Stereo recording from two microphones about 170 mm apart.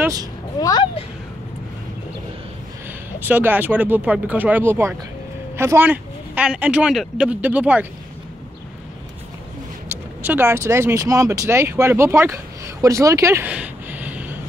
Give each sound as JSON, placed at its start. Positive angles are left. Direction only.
{"t": 0.0, "sound": "speech", "side_deg": -20}
{"t": 0.6, "sound": "speech", "side_deg": 20}
{"t": 3.3, "sound": "speech", "side_deg": -10}
{"t": 9.8, "sound": "speech", "side_deg": -10}